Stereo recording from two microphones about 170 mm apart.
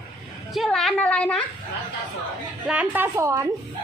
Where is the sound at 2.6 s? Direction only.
10° right (ahead or behind).